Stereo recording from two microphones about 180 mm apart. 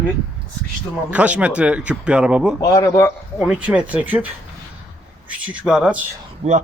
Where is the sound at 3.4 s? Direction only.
5° right (ahead or behind).